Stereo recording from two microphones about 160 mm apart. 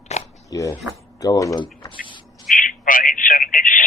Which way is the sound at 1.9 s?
30° left (ahead or behind).